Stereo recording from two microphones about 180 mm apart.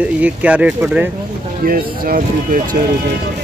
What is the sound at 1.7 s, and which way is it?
Speech, 55° right (ahead or behind).